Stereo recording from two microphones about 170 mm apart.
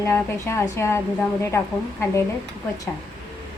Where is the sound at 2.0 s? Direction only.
15° left (ahead or behind).